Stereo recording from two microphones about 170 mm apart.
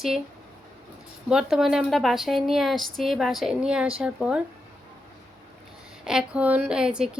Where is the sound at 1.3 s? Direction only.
5° right (ahead or behind).